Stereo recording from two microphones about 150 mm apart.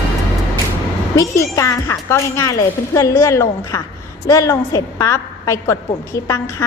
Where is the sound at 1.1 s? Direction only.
20° left (ahead or behind).